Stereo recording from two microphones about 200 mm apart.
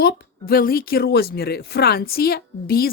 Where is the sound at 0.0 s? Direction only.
50° left (ahead or behind).